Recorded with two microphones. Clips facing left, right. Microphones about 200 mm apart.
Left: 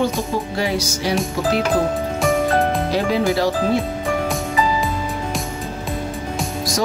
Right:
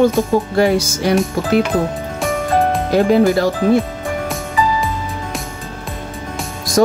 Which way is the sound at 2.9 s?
50° right (ahead or behind).